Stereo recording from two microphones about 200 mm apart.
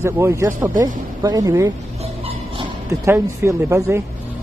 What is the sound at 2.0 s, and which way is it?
Dog, 30° right (ahead or behind).